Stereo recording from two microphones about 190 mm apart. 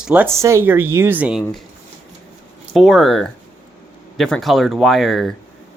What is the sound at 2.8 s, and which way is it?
Speech, centre (ahead or behind).